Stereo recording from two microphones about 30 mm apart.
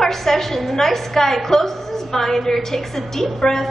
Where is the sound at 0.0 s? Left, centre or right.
Centre.